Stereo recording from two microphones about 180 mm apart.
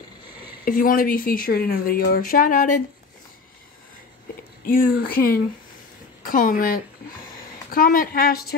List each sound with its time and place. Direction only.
0.7 s speech: 50° left (ahead or behind)
4.6 s a woman's voice: 55° left (ahead or behind)